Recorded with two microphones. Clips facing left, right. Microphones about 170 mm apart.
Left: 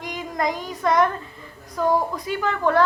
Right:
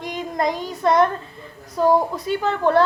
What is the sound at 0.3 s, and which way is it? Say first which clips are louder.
Speech: right 2 dB; 30° right (ahead or behind).